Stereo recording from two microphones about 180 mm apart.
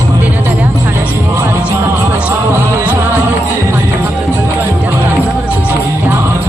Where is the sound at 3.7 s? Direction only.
15° right (ahead or behind).